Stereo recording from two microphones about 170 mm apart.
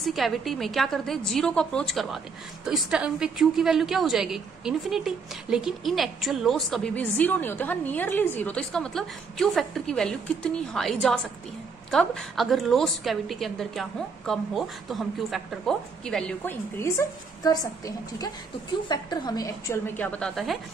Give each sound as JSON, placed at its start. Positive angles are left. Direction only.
{"t": 0.0, "sound": "a woman's voice", "side_deg": 0}
{"t": 17.4, "sound": "a woman's voice", "side_deg": 20}